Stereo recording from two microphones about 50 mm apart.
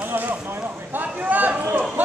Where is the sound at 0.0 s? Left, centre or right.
Right.